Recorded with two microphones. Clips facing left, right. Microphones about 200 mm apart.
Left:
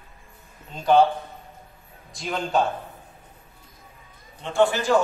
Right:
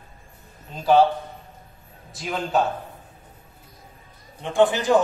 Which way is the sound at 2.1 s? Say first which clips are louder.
Right 1 dB; 5° right (ahead or behind).